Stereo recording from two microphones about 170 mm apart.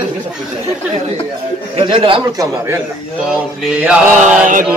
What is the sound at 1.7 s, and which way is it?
Speech, 30° right (ahead or behind).